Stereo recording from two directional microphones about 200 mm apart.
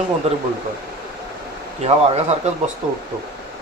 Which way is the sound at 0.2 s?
30° right (ahead or behind).